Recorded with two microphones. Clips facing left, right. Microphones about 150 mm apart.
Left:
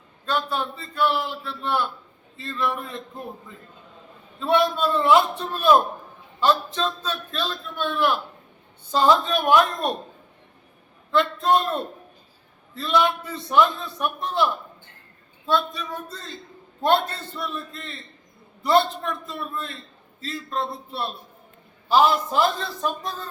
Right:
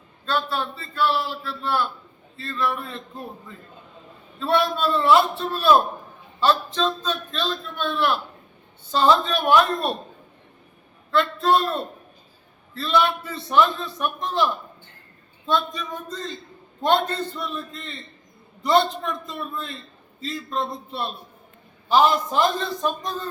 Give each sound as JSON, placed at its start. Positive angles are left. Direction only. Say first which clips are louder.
{"t": 0.3, "sound": "a man's voice", "louder": "even", "side_deg": 15}
{"t": 4.4, "sound": "a man's voice", "louder": "left 1 dB", "side_deg": 15}
{"t": 11.3, "sound": "a man's voice", "louder": "right 1 dB", "side_deg": 20}
{"t": 17.4, "sound": "a man's voice", "louder": "right 1 dB", "side_deg": 5}